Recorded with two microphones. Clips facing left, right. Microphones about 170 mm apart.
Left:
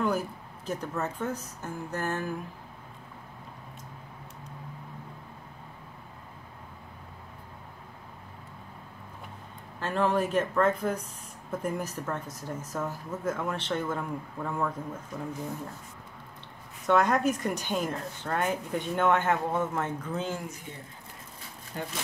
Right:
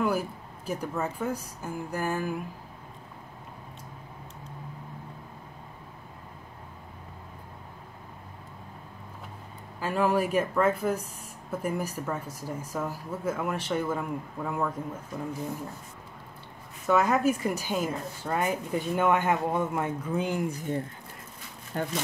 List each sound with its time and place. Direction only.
0.0 s speech: 10° right (ahead or behind)
9.8 s speech: 10° right (ahead or behind)
16.8 s speech: 5° right (ahead or behind)
21.7 s speech: 55° right (ahead or behind)